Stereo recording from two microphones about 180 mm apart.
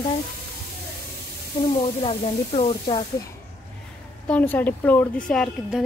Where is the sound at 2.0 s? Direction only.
30° left (ahead or behind).